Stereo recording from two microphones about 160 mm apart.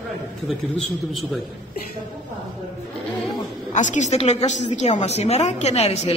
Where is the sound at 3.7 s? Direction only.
50° left (ahead or behind).